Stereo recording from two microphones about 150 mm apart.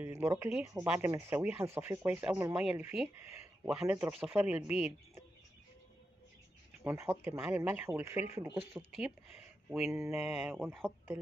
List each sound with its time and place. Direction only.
0.0 s speech: 15° right (ahead or behind)
6.8 s speech: 15° right (ahead or behind)
8.7 s speech: 5° right (ahead or behind)
9.7 s mantra: 5° right (ahead or behind)
9.9 s speech: 15° right (ahead or behind)